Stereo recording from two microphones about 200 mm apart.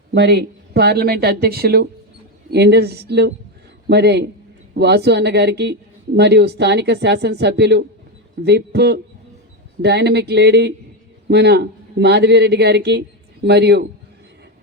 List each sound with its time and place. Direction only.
0.1 s a man's voice: 55° right (ahead or behind)